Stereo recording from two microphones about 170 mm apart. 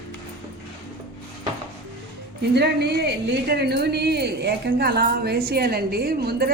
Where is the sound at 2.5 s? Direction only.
75° right (ahead or behind).